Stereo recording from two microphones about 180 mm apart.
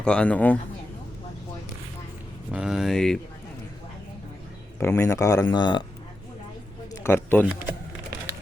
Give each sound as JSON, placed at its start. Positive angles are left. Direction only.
{"t": 0.0, "sound": "speech", "side_deg": 5}
{"t": 2.5, "sound": "speech", "side_deg": -5}
{"t": 4.8, "sound": "speech", "side_deg": 15}
{"t": 6.9, "sound": "speech", "side_deg": 15}